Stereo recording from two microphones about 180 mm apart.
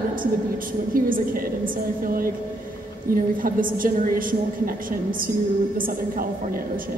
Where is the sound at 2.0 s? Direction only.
50° right (ahead or behind).